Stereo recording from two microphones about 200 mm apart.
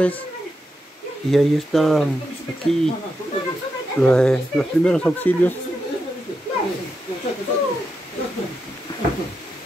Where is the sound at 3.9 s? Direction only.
5° left (ahead or behind).